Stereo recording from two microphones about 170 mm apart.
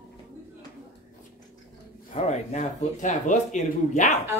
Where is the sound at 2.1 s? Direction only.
40° left (ahead or behind).